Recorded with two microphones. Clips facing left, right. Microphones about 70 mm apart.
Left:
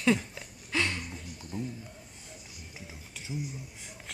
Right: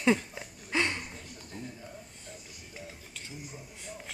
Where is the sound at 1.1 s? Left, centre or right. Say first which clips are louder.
Left 4 dB; centre.